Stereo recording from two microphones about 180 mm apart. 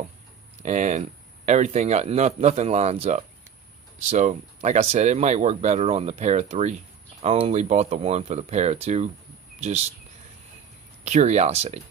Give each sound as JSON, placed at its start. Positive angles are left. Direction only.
{"t": 0.6, "sound": "speech", "side_deg": -40}
{"t": 11.1, "sound": "speech", "side_deg": -40}